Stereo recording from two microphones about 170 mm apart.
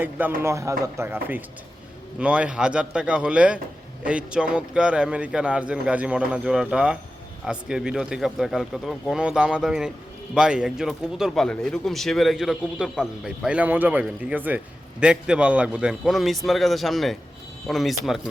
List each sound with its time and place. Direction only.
0.0 s speech: 10° right (ahead or behind)